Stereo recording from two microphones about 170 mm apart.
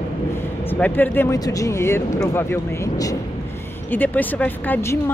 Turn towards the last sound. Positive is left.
turn(degrees=15)  # may be behind; listen again after turning